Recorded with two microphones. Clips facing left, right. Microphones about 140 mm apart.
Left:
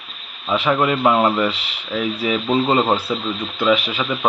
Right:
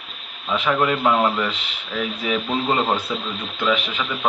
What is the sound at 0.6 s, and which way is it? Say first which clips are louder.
Speech: left 2 dB; 5° left (ahead or behind).